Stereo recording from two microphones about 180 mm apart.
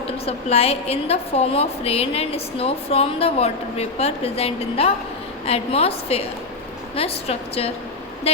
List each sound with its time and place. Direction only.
0.3 s a woman's voice: 35° left (ahead or behind)